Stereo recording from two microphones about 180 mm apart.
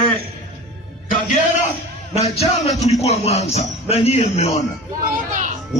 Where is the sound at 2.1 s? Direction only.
35° left (ahead or behind).